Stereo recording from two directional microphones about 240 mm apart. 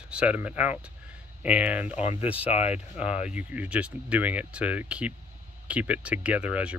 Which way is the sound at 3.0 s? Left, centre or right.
Centre.